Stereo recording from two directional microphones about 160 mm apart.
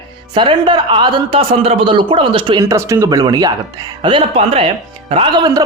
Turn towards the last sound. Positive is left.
turn(degrees=-25)  # may be behind; listen again after turning